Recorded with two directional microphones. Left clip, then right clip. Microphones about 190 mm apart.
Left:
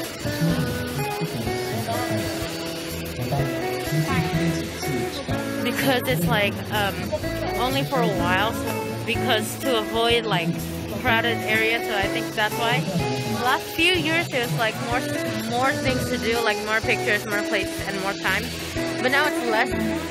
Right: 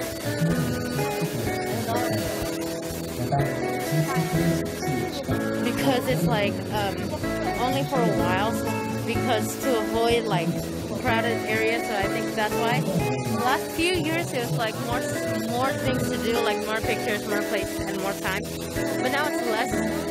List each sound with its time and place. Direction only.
5.8 s speech: 5° right (ahead or behind)
15.6 s speech: centre (ahead or behind)
19.0 s speech: 15° left (ahead or behind)